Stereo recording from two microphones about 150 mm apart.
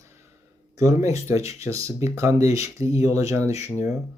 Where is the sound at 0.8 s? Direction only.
20° right (ahead or behind).